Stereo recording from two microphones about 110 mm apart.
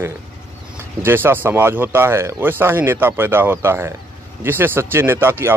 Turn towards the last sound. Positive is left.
turn(degrees=-20)  # may be behind; listen again after turning